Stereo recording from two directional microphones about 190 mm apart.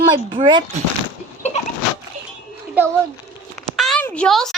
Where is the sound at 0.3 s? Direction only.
25° right (ahead or behind).